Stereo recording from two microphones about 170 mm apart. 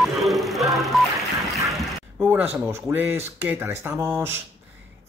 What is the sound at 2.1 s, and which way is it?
Speech, 10° right (ahead or behind).